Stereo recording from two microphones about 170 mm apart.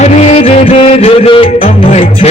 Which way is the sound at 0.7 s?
35° left (ahead or behind).